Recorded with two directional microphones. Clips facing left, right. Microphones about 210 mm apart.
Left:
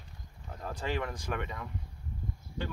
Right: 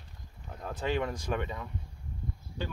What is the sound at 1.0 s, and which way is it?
Speech, 15° right (ahead or behind).